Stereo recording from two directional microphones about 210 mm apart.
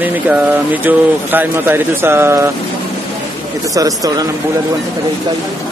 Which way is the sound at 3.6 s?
15° right (ahead or behind).